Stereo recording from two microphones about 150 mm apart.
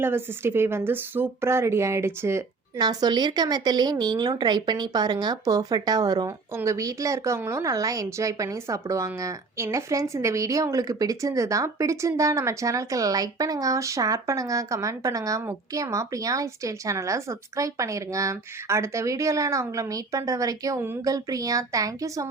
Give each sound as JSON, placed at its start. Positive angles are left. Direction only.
{"t": 0.0, "sound": "a woman's voice", "side_deg": -15}